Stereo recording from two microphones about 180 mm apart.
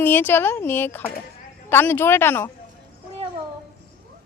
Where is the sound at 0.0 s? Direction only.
10° left (ahead or behind).